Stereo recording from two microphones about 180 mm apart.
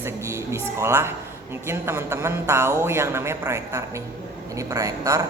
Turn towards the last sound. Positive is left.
turn(degrees=-20)  # may be behind; listen again after turning